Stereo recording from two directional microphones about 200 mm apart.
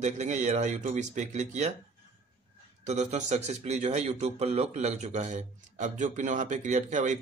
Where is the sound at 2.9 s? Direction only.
35° right (ahead or behind).